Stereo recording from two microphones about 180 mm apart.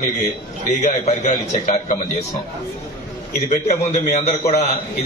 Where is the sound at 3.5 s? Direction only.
40° left (ahead or behind).